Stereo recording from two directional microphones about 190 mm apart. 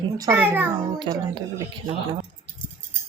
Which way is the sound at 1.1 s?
25° right (ahead or behind).